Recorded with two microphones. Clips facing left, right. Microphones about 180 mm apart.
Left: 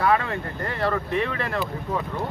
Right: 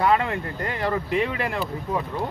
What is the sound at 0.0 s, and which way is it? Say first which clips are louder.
Speech: right 1 dB; 20° right (ahead or behind).